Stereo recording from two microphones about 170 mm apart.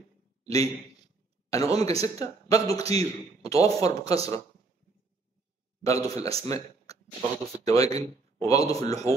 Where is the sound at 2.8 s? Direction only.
35° right (ahead or behind).